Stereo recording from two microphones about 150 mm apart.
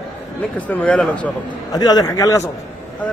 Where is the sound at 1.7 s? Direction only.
25° left (ahead or behind).